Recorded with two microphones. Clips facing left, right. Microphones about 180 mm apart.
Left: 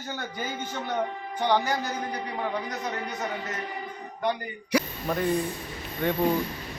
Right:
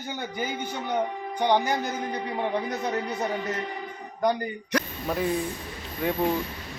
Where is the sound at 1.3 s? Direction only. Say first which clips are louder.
Right 2 dB; 15° right (ahead or behind).